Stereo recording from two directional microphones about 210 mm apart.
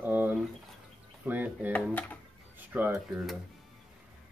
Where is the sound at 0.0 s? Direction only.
10° right (ahead or behind).